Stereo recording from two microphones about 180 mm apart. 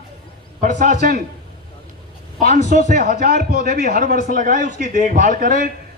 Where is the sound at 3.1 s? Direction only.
55° right (ahead or behind).